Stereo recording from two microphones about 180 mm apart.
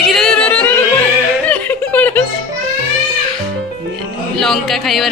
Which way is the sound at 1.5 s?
10° left (ahead or behind).